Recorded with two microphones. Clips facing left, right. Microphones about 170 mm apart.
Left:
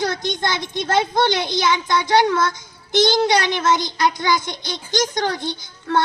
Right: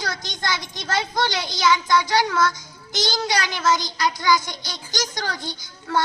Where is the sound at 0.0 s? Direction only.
55° left (ahead or behind).